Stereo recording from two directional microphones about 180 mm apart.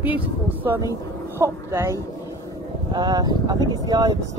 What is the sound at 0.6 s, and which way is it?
Speech, 10° right (ahead or behind).